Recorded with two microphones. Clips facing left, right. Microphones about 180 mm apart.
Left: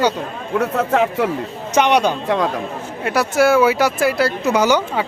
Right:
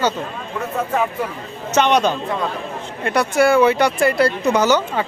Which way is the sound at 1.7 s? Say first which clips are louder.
Left 1 dB; 10° left (ahead or behind).